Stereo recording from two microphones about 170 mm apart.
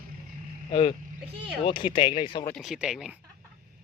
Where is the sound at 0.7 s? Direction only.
30° left (ahead or behind).